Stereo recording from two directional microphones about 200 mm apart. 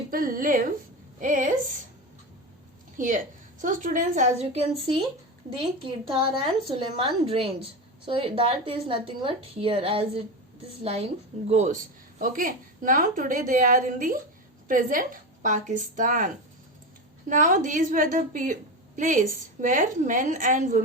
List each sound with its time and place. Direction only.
0.1 s a woman's voice: 45° right (ahead or behind)
3.0 s a woman's voice: 40° right (ahead or behind)